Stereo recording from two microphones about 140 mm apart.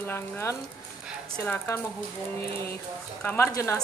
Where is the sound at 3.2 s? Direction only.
15° left (ahead or behind).